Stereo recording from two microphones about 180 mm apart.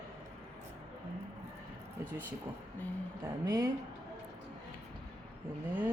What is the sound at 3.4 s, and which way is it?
Speech, 15° right (ahead or behind).